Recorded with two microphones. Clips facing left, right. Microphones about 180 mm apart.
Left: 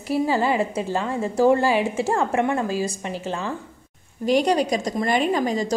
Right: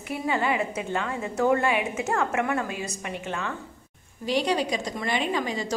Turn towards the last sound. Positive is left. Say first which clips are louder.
# left 6 dB
turn(degrees=40)  # may be behind; listen again after turning